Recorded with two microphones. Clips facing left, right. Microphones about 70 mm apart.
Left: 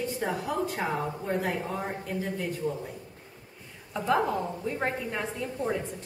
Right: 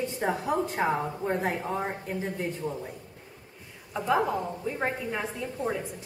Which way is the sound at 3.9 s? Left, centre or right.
Centre.